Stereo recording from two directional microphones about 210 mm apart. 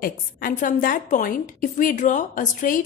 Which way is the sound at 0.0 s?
40° left (ahead or behind).